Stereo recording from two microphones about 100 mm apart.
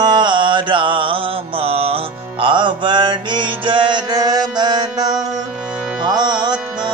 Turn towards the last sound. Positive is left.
turn(degrees=-45)  # may be behind; listen again after turning